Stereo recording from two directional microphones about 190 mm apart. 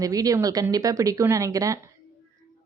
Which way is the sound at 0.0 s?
20° right (ahead or behind).